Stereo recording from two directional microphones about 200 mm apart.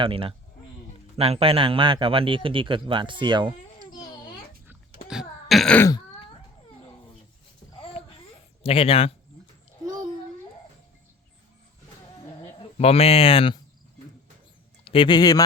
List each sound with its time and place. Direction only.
0.0 s a man's voice: 25° right (ahead or behind)
5.0 s throat clearing: centre (ahead or behind)
8.0 s a sound: 30° left (ahead or behind)
8.6 s speech: 30° left (ahead or behind)
12.7 s speech: 30° left (ahead or behind)
14.8 s speech: 25° left (ahead or behind)